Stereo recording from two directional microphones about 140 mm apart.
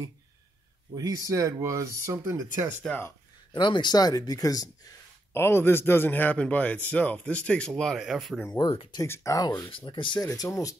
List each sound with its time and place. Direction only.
0.9 s speech: 25° right (ahead or behind)
3.5 s speech: 35° left (ahead or behind); by 8.5 s centre (ahead or behind)
8.9 s speech: 20° left (ahead or behind)
9.7 s speech: 35° left (ahead or behind)
10.2 s speech: 25° left (ahead or behind)